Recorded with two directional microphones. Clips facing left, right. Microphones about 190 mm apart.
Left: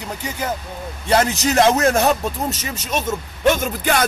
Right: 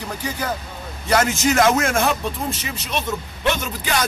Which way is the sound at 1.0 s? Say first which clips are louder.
Left 1 dB; 30° left (ahead or behind).